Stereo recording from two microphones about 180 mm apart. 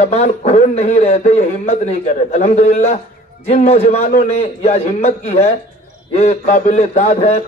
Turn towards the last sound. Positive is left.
turn(degrees=40)  # may be behind; listen again after turning